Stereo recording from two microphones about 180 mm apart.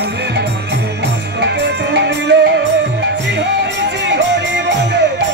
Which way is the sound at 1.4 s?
70° right (ahead or behind).